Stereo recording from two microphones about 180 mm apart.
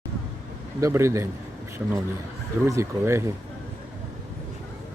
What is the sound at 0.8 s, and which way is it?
Speech, 15° right (ahead or behind).